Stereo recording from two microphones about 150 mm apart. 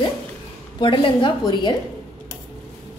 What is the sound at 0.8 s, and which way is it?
Speech, 30° left (ahead or behind).